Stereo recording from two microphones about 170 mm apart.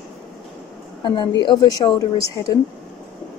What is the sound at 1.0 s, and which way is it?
A woman's voice, 25° left (ahead or behind).